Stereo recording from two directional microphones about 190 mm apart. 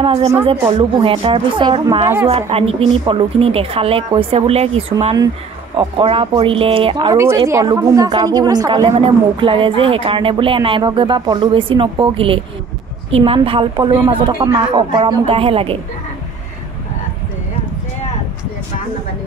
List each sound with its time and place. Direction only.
0.0 s a woman's voice: 30° right (ahead or behind)
7.2 s a woman's voice: 15° right (ahead or behind); by 15.8 s 30° right (ahead or behind)